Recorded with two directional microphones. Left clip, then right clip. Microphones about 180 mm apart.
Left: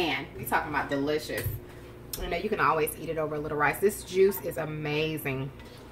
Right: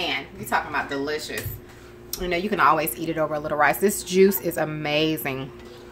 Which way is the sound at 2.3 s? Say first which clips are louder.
Right 6 dB; 55° right (ahead or behind).